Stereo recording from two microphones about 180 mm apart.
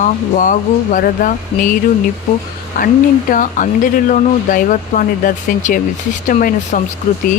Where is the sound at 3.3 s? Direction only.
45° left (ahead or behind).